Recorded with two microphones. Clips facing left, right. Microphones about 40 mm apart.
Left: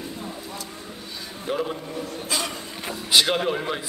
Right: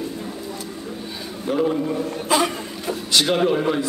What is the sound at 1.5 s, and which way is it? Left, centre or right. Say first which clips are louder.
Speech: right 5 dB; centre.